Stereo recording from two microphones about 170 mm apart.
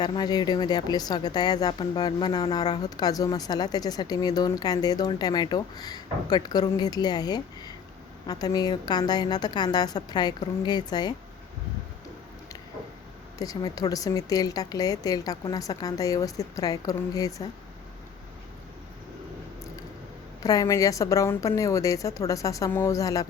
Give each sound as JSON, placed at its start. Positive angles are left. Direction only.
{"t": 0.0, "sound": "speech", "side_deg": 25}
{"t": 13.4, "sound": "speech", "side_deg": 20}
{"t": 20.4, "sound": "speech", "side_deg": 20}